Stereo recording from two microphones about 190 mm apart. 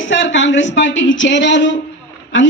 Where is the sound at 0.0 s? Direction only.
75° left (ahead or behind).